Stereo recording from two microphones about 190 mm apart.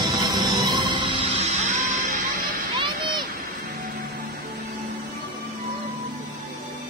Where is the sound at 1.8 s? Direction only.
45° right (ahead or behind).